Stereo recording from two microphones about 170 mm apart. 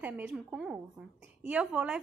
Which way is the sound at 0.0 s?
5° right (ahead or behind).